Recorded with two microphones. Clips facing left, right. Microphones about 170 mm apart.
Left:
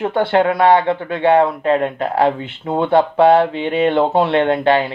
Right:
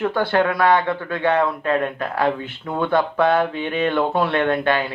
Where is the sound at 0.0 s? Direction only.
25° left (ahead or behind).